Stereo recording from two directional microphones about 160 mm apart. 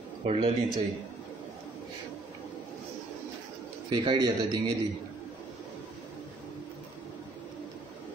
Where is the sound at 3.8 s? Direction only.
25° right (ahead or behind).